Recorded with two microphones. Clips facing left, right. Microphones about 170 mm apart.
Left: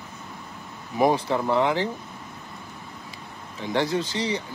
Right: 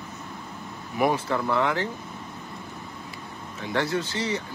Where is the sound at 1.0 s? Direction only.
20° left (ahead or behind).